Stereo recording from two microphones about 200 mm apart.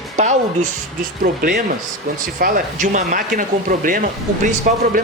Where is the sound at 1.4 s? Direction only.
45° right (ahead or behind).